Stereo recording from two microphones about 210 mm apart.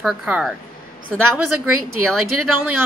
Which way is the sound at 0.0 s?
Centre (ahead or behind).